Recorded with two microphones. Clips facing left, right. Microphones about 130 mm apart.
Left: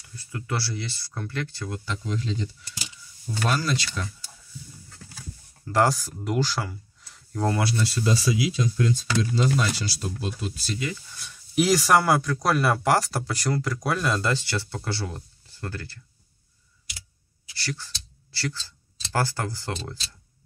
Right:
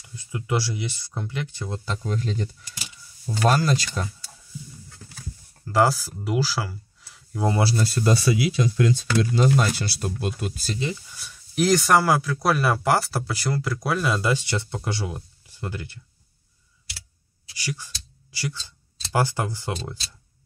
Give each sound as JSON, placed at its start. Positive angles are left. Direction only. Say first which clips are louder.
{"t": 0.0, "sound": "speech", "louder": "right 3 dB", "side_deg": -20}
{"t": 2.0, "sound": "speech", "louder": "right 2 dB", "side_deg": -50}
{"t": 5.7, "sound": "speech", "louder": "right 2 dB", "side_deg": 0}
{"t": 7.5, "sound": "speech", "louder": "right 3 dB", "side_deg": -30}
{"t": 7.8, "sound": "speech", "louder": "right 3 dB", "side_deg": -50}
{"t": 11.1, "sound": "speech", "louder": "even", "side_deg": -5}
{"t": 17.6, "sound": "a sound", "louder": "right 1 dB", "side_deg": -15}
{"t": 19.1, "sound": "speech", "louder": "right 3 dB", "side_deg": -15}